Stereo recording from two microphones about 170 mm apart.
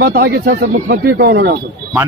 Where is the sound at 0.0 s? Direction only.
60° right (ahead or behind).